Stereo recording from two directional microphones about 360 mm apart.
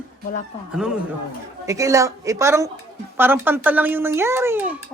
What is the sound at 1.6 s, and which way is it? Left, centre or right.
Speech, centre.